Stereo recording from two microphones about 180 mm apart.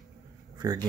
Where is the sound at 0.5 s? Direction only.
20° right (ahead or behind).